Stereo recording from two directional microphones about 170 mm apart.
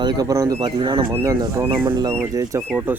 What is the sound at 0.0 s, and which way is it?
Speech, 25° right (ahead or behind).